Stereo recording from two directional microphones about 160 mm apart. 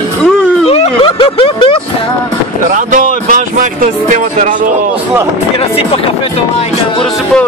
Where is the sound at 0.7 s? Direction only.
35° left (ahead or behind).